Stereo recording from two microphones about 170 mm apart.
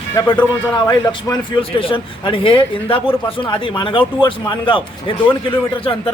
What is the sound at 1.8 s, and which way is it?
Speech, 30° left (ahead or behind).